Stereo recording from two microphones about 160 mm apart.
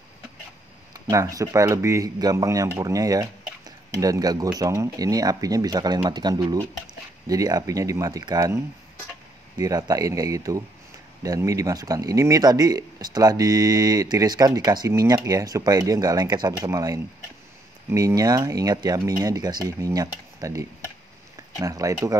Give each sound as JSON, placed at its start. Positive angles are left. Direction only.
{"t": 0.9, "sound": "speech", "side_deg": -20}
{"t": 9.6, "sound": "speech", "side_deg": -25}